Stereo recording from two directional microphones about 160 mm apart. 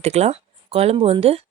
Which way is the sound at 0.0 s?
45° right (ahead or behind).